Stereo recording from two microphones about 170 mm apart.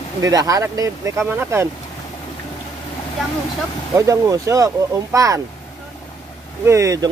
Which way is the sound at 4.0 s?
20° right (ahead or behind).